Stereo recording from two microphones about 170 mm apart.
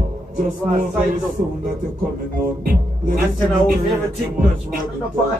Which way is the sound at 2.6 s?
55° right (ahead or behind).